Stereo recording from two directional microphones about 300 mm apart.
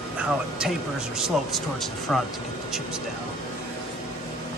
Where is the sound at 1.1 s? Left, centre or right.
Centre.